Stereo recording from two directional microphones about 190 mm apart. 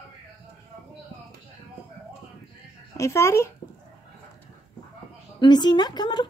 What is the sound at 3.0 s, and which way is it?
Speech, 15° left (ahead or behind).